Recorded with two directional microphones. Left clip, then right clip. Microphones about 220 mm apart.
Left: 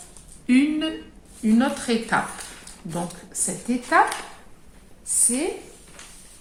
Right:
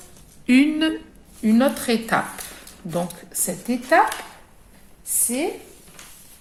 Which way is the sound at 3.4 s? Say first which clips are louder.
Right 4 dB; 45° right (ahead or behind).